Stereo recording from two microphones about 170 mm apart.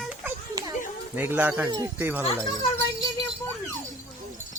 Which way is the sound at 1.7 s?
25° right (ahead or behind).